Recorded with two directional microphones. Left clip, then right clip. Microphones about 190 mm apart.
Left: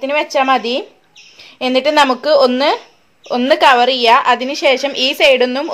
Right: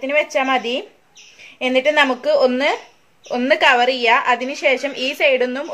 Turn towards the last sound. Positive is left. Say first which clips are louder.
# left 5 dB
turn(degrees=35)  # may be behind; listen again after turning